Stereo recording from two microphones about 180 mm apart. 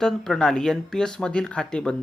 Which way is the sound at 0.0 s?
Centre (ahead or behind).